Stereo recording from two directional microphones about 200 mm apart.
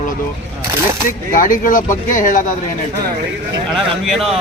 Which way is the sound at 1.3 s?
45° left (ahead or behind).